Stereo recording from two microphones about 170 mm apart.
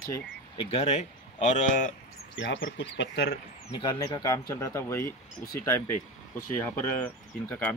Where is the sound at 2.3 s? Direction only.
90° left.